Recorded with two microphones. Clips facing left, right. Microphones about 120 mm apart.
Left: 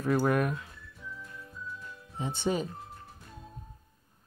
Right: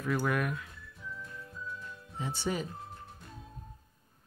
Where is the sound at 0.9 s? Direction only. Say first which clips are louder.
Right 1 dB; centre (ahead or behind).